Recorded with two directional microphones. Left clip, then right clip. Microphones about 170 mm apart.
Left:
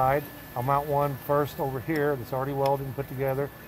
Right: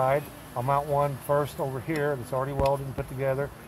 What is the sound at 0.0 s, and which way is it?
Speech, 20° left (ahead or behind).